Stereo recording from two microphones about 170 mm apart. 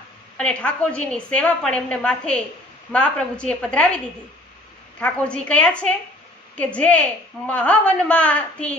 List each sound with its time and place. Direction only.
0.4 s a woman's voice: 5° left (ahead or behind)